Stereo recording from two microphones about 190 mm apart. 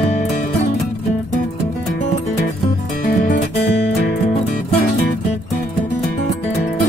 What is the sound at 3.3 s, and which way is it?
Music, 60° left (ahead or behind).